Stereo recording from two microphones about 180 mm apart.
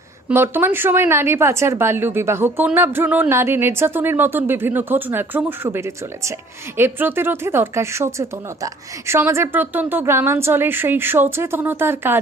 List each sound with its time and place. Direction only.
0.3 s speech: 10° right (ahead or behind)